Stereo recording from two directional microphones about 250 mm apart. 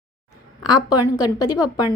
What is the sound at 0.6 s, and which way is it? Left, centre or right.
Speech, centre.